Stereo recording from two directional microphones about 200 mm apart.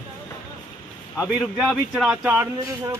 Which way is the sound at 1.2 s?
Centre (ahead or behind).